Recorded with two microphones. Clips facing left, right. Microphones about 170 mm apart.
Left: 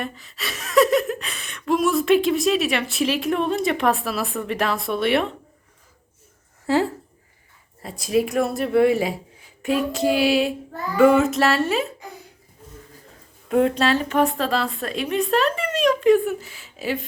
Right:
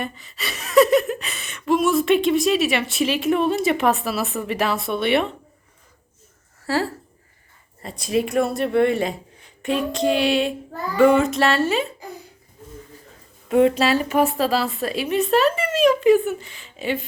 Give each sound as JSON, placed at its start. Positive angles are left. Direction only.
{"t": 0.0, "sound": "speech", "side_deg": 0}
{"t": 6.7, "sound": "speech", "side_deg": 20}
{"t": 7.8, "sound": "speech", "side_deg": 0}
{"t": 13.5, "sound": "speech", "side_deg": -5}